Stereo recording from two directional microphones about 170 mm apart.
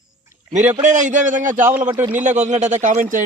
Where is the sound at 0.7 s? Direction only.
45° right (ahead or behind).